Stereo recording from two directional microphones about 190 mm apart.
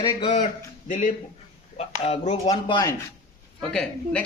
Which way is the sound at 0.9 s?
40° left (ahead or behind).